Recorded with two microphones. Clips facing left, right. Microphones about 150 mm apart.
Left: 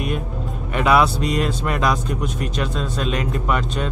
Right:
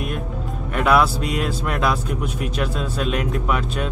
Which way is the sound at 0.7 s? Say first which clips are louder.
Left 1 dB; centre (ahead or behind).